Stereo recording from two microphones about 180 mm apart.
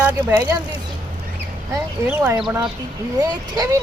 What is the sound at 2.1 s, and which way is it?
Speech, 10° right (ahead or behind).